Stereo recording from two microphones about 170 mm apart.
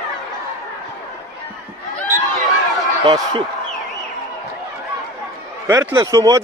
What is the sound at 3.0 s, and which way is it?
Speech, 25° right (ahead or behind).